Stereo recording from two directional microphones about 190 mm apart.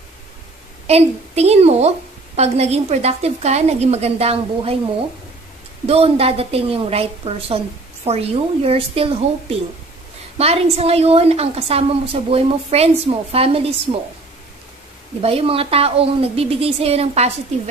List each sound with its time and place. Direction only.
0.8 s a woman's voice: 35° right (ahead or behind)
5.9 s a woman's voice: 30° right (ahead or behind)
15.2 s a woman's voice: 30° right (ahead or behind)